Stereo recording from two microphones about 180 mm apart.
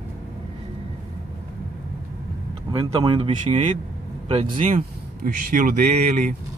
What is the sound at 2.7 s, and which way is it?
Speech, 30° right (ahead or behind).